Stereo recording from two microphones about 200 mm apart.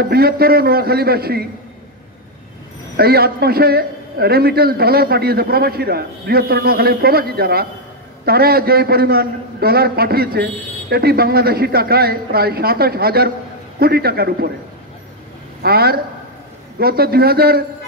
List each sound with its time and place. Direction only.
0.0 s a man's voice: 50° right (ahead or behind)
3.0 s a man's voice: 50° right (ahead or behind)
15.6 s a man's voice: 50° right (ahead or behind)